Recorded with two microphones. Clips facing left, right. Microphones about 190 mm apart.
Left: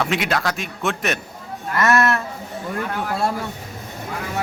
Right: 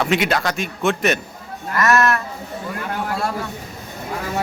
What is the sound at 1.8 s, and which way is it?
Speech, 25° left (ahead or behind).